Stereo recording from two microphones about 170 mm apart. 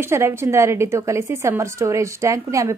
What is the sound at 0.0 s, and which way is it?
A woman's voice, 15° right (ahead or behind).